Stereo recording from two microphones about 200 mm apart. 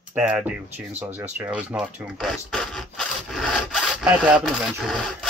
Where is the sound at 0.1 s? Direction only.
5° right (ahead or behind).